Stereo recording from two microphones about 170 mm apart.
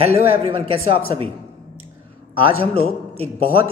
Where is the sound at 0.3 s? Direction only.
35° right (ahead or behind).